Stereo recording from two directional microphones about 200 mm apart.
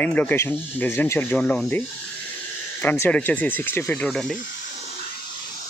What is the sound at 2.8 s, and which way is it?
Speech, 10° left (ahead or behind).